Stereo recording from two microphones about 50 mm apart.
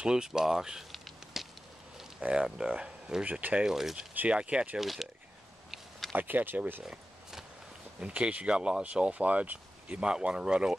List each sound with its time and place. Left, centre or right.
0.0 s speech: centre
0.9 s a sound: centre
2.3 s speech: centre
3.3 s speech: right
3.6 s speech: centre
4.3 s speech: right
4.7 s speech: centre
5.7 s a sound: centre
6.1 s speech: right
6.8 s a sound: centre
8.0 s speech: right
10.0 s speech: centre